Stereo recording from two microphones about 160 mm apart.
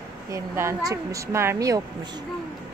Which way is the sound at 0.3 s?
20° right (ahead or behind).